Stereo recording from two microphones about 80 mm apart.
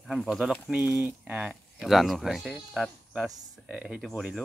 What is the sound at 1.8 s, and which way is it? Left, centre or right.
Speech, centre.